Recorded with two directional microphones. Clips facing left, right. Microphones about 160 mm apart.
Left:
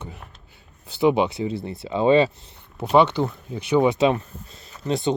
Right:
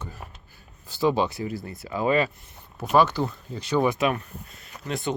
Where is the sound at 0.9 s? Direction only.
20° left (ahead or behind).